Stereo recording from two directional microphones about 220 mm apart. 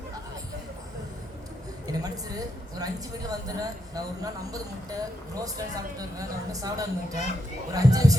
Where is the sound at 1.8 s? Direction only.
15° right (ahead or behind).